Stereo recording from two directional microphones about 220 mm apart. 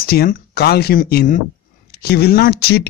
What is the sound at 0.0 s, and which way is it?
Speech, 45° left (ahead or behind).